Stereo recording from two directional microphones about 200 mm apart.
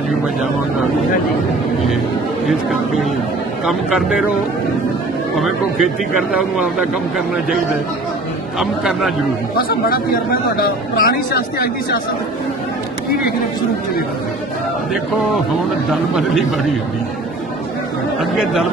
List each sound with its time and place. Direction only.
2.4 s speech: centre (ahead or behind)
5.4 s speech: centre (ahead or behind)
8.5 s speech: centre (ahead or behind)
9.6 s speech: 45° left (ahead or behind)
15.9 s speech: centre (ahead or behind)
18.2 s speech: centre (ahead or behind)